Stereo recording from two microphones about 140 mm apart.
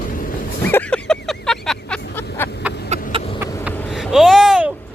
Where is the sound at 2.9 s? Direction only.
50° right (ahead or behind).